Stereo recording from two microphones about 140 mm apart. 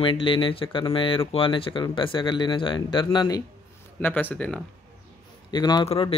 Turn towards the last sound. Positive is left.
turn(degrees=45)  # may be behind; listen again after turning